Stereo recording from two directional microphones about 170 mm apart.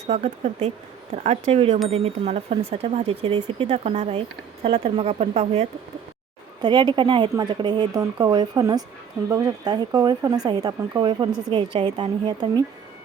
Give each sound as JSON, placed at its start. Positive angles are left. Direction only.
{"t": 0.1, "sound": "speech", "side_deg": -40}
{"t": 6.6, "sound": "speech", "side_deg": -25}